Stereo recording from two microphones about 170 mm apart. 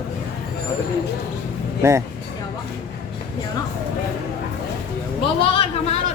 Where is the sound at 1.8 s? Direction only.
15° right (ahead or behind).